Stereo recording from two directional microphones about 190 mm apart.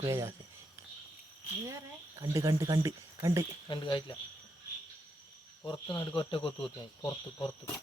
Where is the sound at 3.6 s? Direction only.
25° left (ahead or behind).